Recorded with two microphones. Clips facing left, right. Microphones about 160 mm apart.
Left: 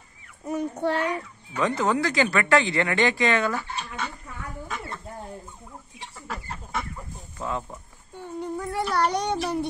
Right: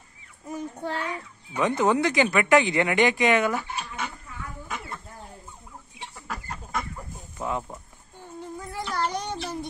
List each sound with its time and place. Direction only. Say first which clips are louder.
0.5 s a child's voice: left 6 dB; 70° left (ahead or behind)
1.5 s speech: right 1 dB; 20° right (ahead or behind)
3.7 s a sound: even; 10° right (ahead or behind)
6.1 s chicken: left 1 dB; 5° left (ahead or behind)
7.3 s speech: right 1 dB; 15° right (ahead or behind)
8.5 s child singing: left 5 dB; 70° left (ahead or behind)